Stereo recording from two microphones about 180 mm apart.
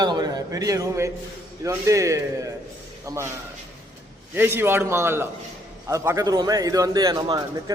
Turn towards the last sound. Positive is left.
turn(degrees=-20)  # may be behind; listen again after turning